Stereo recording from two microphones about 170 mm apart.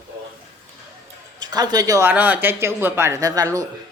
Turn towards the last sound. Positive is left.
turn(degrees=-20)  # may be behind; listen again after turning